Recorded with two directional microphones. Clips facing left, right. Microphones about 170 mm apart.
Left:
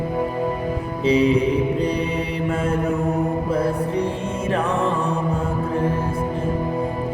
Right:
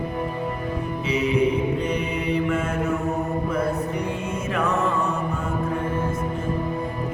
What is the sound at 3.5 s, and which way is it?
Music, 30° left (ahead or behind).